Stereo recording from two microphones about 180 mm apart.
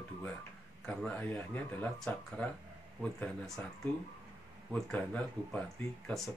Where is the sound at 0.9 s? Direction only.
5° left (ahead or behind).